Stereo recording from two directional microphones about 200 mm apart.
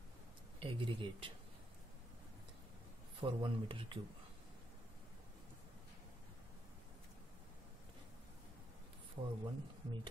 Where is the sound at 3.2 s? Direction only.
25° right (ahead or behind).